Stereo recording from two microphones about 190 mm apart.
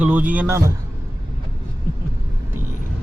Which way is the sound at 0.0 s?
10° right (ahead or behind).